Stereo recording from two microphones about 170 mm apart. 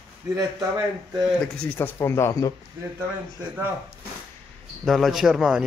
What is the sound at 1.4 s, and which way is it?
Speech, 10° left (ahead or behind).